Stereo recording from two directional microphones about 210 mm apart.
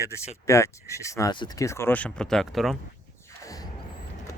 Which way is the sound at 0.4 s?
15° left (ahead or behind).